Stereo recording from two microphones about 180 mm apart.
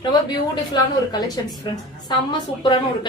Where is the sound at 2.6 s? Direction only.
25° left (ahead or behind).